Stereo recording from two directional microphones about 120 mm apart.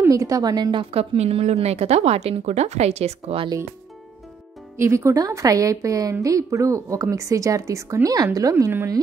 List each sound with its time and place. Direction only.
0.0 s a woman's voice: 25° right (ahead or behind); by 1.0 s 45° right (ahead or behind)
1.1 s speech: 65° right (ahead or behind)
4.7 s speech: 25° right (ahead or behind)